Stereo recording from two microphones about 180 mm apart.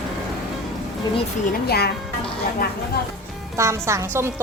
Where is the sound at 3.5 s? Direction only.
15° right (ahead or behind).